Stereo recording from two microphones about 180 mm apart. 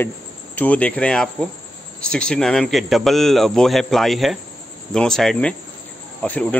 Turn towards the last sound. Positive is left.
turn(degrees=10)  # may be behind; listen again after turning